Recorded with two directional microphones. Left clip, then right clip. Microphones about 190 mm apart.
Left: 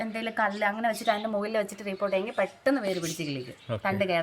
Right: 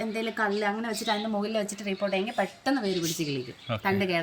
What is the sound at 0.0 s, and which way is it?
Speech, 40° left (ahead or behind).